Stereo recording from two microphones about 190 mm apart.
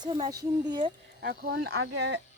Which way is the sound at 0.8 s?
55° right (ahead or behind).